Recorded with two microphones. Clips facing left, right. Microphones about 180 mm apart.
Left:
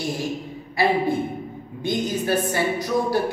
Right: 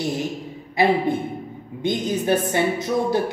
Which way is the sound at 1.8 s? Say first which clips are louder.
Right 1 dB; 20° right (ahead or behind).